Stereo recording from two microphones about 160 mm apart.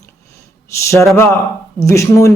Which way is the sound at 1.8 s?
20° left (ahead or behind).